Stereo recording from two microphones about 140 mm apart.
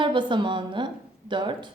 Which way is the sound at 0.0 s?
35° right (ahead or behind).